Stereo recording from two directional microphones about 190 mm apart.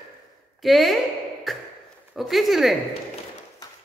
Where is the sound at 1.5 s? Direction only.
Centre (ahead or behind).